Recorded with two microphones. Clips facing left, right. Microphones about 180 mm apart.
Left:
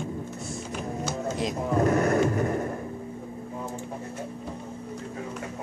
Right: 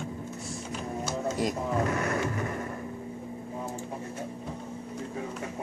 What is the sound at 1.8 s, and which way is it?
Music, 40° left (ahead or behind).